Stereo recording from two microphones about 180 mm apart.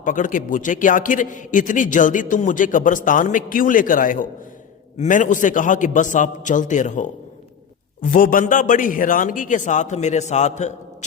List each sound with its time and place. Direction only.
0.0 s a man's voice: 45° left (ahead or behind)